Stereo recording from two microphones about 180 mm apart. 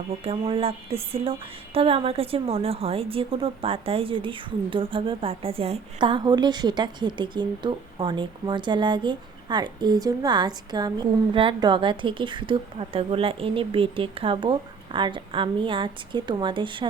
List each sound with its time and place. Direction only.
0.3 s a woman's voice: 30° right (ahead or behind)